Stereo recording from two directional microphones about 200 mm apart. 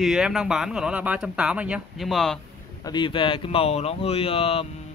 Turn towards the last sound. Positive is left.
turn(degrees=30)  # may be behind; listen again after turning